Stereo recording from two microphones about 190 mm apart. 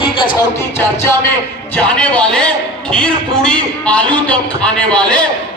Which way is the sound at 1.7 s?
5° left (ahead or behind).